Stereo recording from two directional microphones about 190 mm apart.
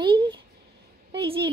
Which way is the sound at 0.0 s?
25° right (ahead or behind).